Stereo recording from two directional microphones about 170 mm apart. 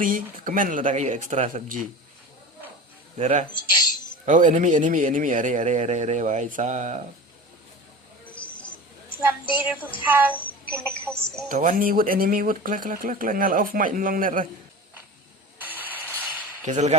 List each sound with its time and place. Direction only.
0.0 s a man's voice: 50° right (ahead or behind)
3.2 s a man's voice: 40° right (ahead or behind)
9.0 s a sound: 10° right (ahead or behind)
9.6 s music: 10° right (ahead or behind)
10.3 s a sound: 5° left (ahead or behind)
11.4 s speech: 50° right (ahead or behind)
15.5 s vehicle: 10° right (ahead or behind)
16.2 s a sound: 10° right (ahead or behind)
16.6 s a man's voice: 45° right (ahead or behind)